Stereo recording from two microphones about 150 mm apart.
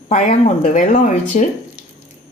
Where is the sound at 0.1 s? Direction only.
55° left (ahead or behind).